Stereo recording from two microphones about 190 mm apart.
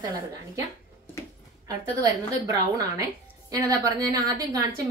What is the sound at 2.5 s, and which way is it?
A woman's voice, 20° right (ahead or behind).